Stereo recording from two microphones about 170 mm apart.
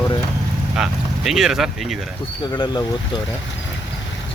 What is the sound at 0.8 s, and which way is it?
Speech, 5° right (ahead or behind).